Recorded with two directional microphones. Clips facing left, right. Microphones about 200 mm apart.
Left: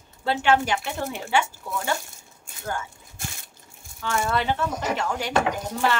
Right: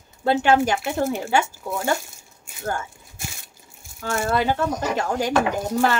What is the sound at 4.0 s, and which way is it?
Speech, 45° right (ahead or behind).